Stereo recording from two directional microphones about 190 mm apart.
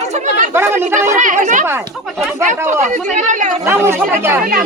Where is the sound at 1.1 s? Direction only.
40° right (ahead or behind).